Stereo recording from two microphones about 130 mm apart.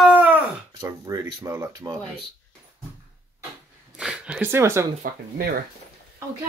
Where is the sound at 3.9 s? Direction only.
5° right (ahead or behind).